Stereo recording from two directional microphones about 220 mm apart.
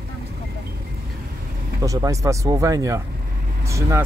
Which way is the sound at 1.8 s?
15° right (ahead or behind).